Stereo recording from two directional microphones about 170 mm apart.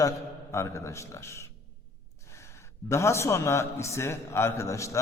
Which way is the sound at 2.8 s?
15° left (ahead or behind).